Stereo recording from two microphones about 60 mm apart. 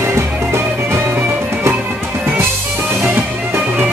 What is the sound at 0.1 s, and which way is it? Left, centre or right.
Music, right.